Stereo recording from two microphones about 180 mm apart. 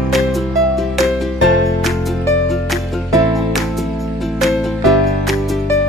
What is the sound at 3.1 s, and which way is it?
Music, centre (ahead or behind).